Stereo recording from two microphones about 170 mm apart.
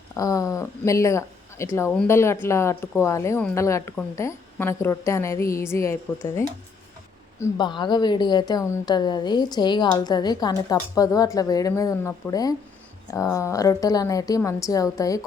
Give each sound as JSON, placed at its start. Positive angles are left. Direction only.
{"t": 0.1, "sound": "a woman's voice", "side_deg": 20}